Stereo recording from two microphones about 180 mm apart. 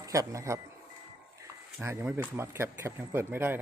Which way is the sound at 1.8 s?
15° right (ahead or behind).